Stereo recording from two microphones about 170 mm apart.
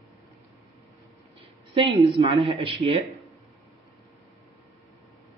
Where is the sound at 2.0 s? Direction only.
30° right (ahead or behind).